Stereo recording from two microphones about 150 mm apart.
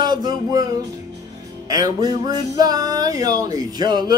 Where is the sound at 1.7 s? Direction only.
25° right (ahead or behind).